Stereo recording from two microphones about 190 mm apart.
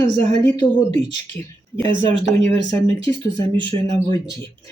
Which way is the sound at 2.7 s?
10° left (ahead or behind).